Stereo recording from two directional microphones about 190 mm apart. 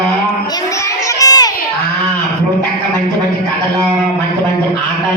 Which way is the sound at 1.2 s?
20° left (ahead or behind).